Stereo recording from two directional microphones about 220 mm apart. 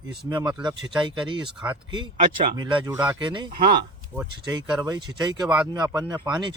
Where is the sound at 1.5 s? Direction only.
5° right (ahead or behind).